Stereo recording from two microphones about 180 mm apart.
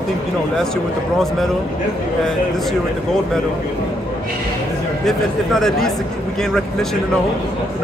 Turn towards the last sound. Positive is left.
turn(degrees=0)  # may be behind; listen again after turning